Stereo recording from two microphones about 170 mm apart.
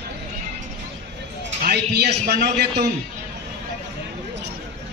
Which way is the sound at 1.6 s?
75° right (ahead or behind).